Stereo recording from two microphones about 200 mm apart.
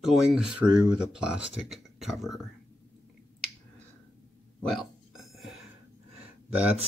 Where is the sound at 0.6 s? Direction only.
20° right (ahead or behind).